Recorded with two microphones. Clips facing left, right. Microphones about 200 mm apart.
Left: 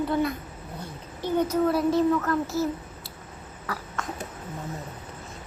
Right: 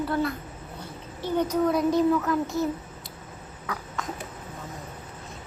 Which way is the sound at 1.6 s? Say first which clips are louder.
Right 1 dB; 5° left (ahead or behind).